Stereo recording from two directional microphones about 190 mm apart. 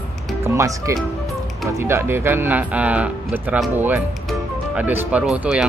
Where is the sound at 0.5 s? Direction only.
15° right (ahead or behind).